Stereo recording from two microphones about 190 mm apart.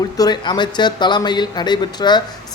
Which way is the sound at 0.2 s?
20° left (ahead or behind).